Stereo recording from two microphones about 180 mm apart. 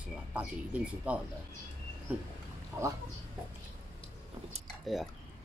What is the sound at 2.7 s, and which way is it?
Speech, 15° right (ahead or behind).